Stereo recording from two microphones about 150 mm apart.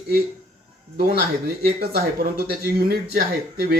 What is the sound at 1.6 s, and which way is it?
Speech, 90° right.